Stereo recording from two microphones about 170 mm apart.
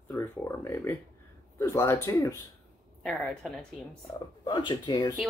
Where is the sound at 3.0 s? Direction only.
Centre (ahead or behind).